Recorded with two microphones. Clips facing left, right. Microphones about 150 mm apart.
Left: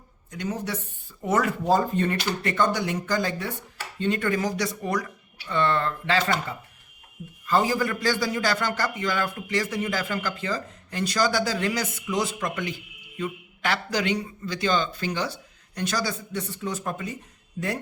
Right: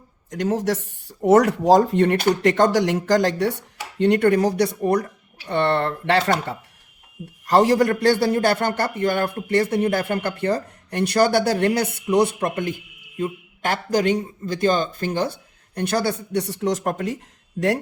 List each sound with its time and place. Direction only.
0.3 s a man's voice: 90° right
1.0 s speech: 75° right (ahead or behind)
1.9 s speech: 70° right (ahead or behind)
2.3 s speech: 90° right; by 4.4 s 70° right (ahead or behind)
4.4 s a man's voice: 60° right (ahead or behind)
7.4 s a man's voice: 75° right (ahead or behind)